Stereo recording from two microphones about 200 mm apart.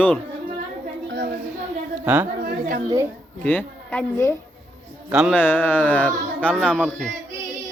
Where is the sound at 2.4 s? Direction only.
45° right (ahead or behind).